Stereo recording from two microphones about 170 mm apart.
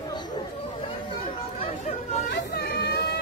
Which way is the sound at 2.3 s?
70° left (ahead or behind).